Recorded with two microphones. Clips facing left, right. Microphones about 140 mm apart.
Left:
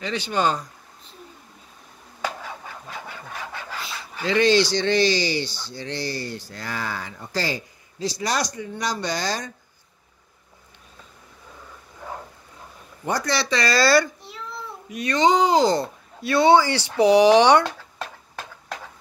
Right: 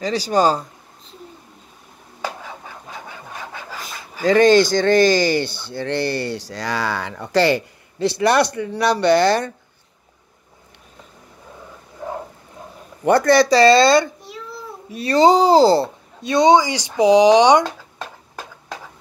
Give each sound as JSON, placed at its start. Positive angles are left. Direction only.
{"t": 0.0, "sound": "speech", "side_deg": -35}
{"t": 2.9, "sound": "a sound", "side_deg": -15}
{"t": 4.2, "sound": "speech", "side_deg": -45}
{"t": 13.0, "sound": "speech", "side_deg": -55}
{"t": 13.5, "sound": "speech", "side_deg": -30}
{"t": 14.9, "sound": "speech", "side_deg": -30}